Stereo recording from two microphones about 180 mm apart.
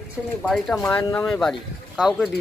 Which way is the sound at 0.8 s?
15° left (ahead or behind).